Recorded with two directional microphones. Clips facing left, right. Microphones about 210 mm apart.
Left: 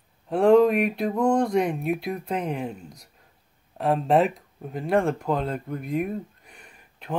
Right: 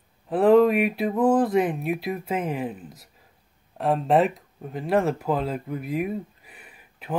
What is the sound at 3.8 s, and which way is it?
Speech, centre (ahead or behind).